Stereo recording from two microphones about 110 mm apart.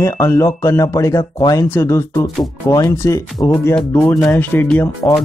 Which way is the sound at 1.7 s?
20° left (ahead or behind).